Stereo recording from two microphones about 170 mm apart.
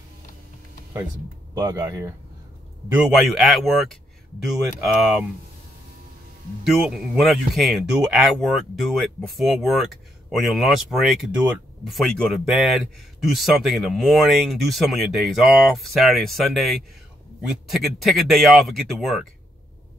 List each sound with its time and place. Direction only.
1.5 s speech: 20° right (ahead or behind)
2.9 s speech: centre (ahead or behind)
6.6 s speech: centre (ahead or behind)